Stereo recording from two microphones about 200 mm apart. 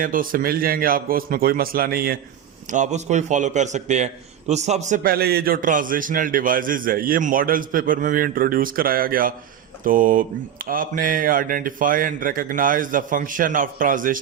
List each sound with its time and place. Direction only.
0.0 s a man's voice: 45° right (ahead or behind)
2.7 s a man's voice: 35° right (ahead or behind)